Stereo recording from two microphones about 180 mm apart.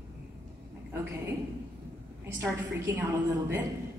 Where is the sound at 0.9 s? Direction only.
10° right (ahead or behind).